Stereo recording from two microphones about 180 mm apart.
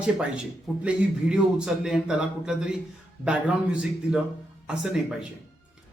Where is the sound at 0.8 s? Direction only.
5° right (ahead or behind).